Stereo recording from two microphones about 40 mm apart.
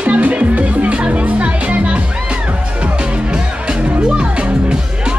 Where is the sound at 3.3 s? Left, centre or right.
Right.